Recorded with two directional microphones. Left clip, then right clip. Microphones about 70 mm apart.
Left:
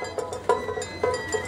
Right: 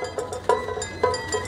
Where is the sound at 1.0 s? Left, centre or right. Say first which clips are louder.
Right 3 dB; centre.